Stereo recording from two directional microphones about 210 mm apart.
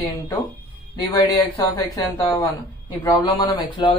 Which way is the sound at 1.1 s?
15° left (ahead or behind).